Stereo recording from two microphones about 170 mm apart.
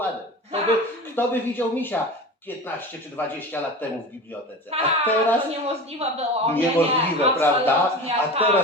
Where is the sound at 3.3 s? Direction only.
10° left (ahead or behind).